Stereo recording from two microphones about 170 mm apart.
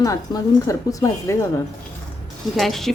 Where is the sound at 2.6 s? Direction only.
Centre (ahead or behind).